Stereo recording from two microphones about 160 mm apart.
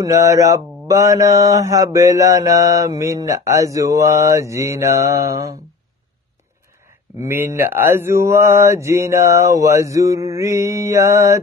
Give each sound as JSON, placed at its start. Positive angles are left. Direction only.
{"t": 0.0, "sound": "mantra", "side_deg": -20}
{"t": 7.2, "sound": "mantra", "side_deg": -15}